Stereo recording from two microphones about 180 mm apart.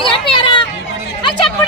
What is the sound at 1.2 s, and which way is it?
Chatter, 25° left (ahead or behind).